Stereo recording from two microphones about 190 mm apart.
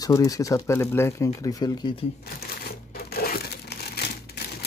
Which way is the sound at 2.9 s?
50° left (ahead or behind).